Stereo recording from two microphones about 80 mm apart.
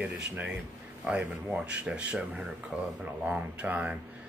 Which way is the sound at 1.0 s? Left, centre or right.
Centre.